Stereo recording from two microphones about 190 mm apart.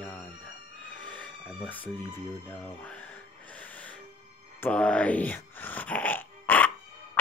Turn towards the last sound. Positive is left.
turn(degrees=10)  # may be behind; listen again after turning